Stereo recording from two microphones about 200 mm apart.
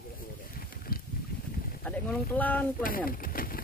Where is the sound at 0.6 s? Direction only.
45° left (ahead or behind).